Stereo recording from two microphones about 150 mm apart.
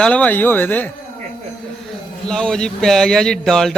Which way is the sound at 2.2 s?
5° left (ahead or behind).